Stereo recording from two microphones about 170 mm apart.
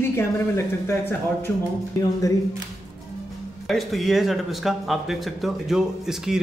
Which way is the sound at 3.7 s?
Centre (ahead or behind).